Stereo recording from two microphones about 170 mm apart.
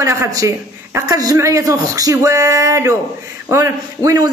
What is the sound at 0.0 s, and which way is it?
A man's voice, 20° right (ahead or behind).